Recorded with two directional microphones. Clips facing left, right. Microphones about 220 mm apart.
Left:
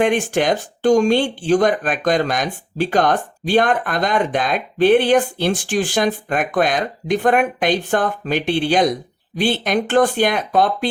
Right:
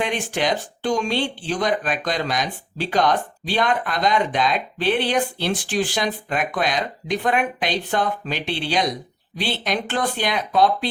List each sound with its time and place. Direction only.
0.0 s speech: 50° left (ahead or behind)